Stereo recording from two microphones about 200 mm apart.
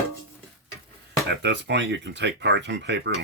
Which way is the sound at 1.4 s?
60° right (ahead or behind).